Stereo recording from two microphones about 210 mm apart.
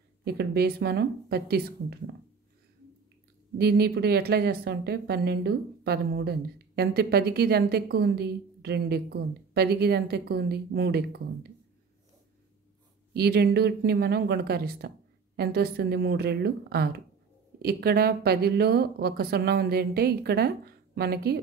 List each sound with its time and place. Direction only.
0.2 s speech: 50° right (ahead or behind)
3.5 s speech: 50° right (ahead or behind)
13.1 s speech: 50° right (ahead or behind)